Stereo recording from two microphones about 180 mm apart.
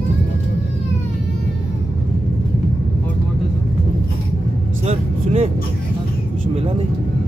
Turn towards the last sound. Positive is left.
turn(degrees=-35)  # may be behind; listen again after turning